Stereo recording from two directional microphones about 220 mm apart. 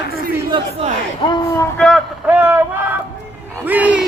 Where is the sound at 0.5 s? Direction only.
25° right (ahead or behind).